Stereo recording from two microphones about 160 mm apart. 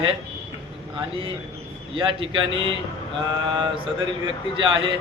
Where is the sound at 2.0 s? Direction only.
35° right (ahead or behind).